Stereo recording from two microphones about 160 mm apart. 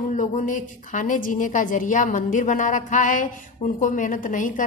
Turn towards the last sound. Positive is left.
turn(degrees=55)  # may be behind; listen again after turning